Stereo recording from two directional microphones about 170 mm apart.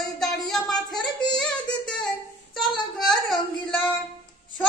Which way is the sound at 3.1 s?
5° left (ahead or behind).